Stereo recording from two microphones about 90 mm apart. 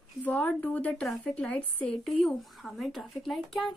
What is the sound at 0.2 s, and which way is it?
A woman's voice, 20° left (ahead or behind).